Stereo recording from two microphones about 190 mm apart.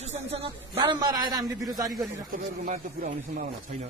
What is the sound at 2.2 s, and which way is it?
Speech, 45° right (ahead or behind).